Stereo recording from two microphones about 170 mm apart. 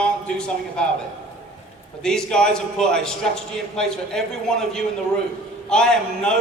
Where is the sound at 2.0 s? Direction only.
5° left (ahead or behind).